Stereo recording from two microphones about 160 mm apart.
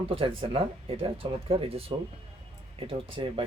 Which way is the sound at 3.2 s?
25° right (ahead or behind).